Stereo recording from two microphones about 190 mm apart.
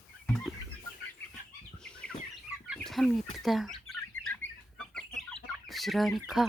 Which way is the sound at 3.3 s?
Centre (ahead or behind).